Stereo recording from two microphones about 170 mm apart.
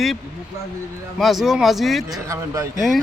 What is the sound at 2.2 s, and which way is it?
Speech, 15° right (ahead or behind).